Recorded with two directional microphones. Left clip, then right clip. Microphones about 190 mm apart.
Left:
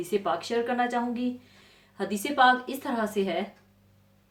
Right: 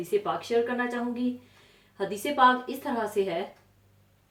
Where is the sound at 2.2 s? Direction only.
35° left (ahead or behind).